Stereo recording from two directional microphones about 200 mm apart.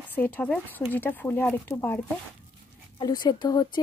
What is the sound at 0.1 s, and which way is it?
Speech, 10° left (ahead or behind).